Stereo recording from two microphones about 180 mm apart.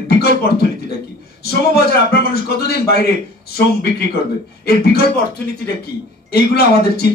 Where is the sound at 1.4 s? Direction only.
60° left (ahead or behind).